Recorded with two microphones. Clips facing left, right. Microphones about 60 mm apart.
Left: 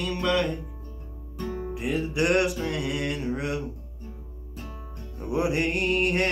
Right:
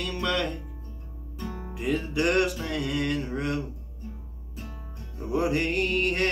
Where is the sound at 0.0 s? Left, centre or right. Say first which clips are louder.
Left 3 dB; centre.